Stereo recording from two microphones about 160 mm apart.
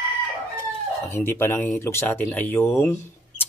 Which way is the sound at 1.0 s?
15° left (ahead or behind).